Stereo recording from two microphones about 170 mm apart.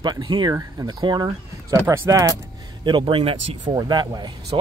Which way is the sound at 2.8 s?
30° right (ahead or behind).